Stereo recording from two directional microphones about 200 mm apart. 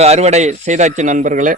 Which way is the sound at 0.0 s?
35° right (ahead or behind).